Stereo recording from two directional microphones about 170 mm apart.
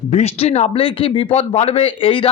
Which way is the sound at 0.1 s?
40° left (ahead or behind).